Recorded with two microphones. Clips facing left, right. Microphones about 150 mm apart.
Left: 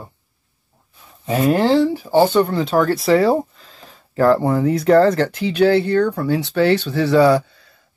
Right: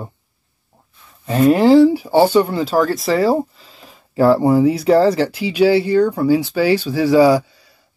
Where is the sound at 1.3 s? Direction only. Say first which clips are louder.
Right 4 dB; centre (ahead or behind).